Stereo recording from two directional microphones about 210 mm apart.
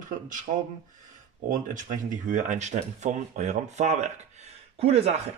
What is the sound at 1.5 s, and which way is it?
Speech, 40° right (ahead or behind).